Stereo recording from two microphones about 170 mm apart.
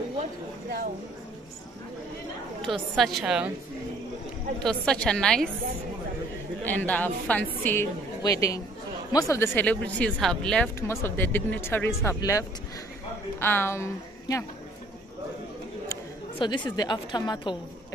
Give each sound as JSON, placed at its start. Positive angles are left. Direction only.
{"t": 2.6, "sound": "a woman's voice", "side_deg": 0}
{"t": 4.6, "sound": "a woman's voice", "side_deg": 5}
{"t": 6.6, "sound": "a woman's voice", "side_deg": 10}
{"t": 16.3, "sound": "a woman's voice", "side_deg": 25}